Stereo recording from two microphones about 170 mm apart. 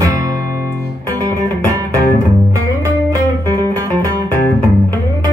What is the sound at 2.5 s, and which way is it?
Music, 20° right (ahead or behind).